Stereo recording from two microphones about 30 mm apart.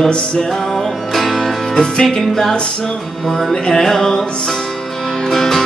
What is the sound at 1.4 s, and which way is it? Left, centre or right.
Music, left.